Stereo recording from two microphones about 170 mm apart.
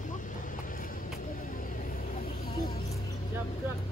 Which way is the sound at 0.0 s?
50° left (ahead or behind).